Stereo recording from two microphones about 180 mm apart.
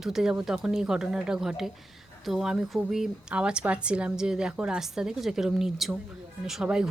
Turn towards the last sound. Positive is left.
turn(degrees=-5)  # may be behind; listen again after turning